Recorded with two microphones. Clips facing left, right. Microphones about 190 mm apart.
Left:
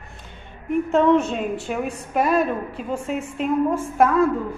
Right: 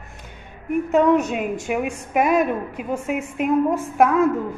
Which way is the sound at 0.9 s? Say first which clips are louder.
Right 1 dB; 10° right (ahead or behind).